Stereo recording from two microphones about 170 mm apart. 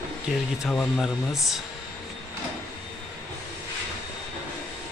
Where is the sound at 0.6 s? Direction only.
Centre (ahead or behind).